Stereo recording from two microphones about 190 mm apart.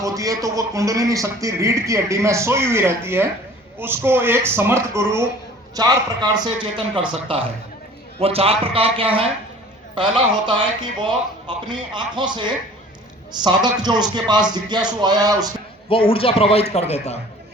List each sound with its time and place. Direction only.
0.0 s a man's voice: 15° right (ahead or behind)
15.9 s a man's voice: 30° left (ahead or behind)